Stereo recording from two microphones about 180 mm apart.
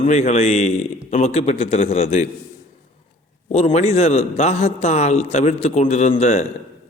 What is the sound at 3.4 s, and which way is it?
A man's voice, 35° left (ahead or behind).